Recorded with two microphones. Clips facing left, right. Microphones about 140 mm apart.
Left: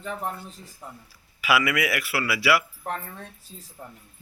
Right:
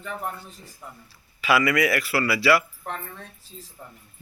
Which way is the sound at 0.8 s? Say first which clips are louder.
Left 1 dB; 30° left (ahead or behind).